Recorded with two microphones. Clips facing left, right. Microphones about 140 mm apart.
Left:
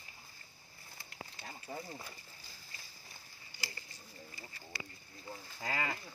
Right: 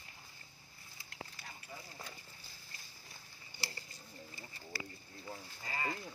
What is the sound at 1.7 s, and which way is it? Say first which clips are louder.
Horse: left 8 dB; 55° left (ahead or behind).